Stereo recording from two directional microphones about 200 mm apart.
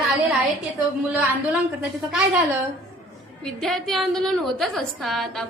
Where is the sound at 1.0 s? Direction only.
5° right (ahead or behind).